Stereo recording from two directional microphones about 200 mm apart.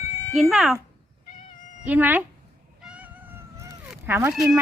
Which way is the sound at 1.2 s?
40° left (ahead or behind).